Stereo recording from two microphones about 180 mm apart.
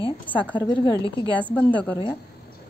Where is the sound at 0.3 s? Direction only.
10° left (ahead or behind).